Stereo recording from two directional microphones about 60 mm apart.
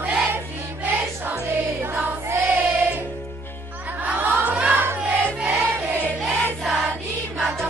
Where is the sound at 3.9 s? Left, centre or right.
Right.